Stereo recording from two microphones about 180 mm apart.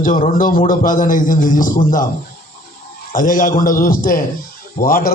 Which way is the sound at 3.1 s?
50° left (ahead or behind).